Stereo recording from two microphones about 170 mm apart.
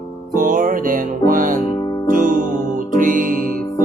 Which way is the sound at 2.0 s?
55° right (ahead or behind).